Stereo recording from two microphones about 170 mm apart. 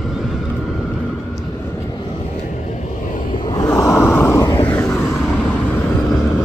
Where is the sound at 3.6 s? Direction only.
15° left (ahead or behind).